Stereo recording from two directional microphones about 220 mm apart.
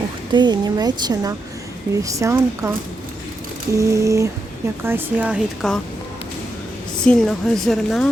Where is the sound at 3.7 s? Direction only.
15° right (ahead or behind).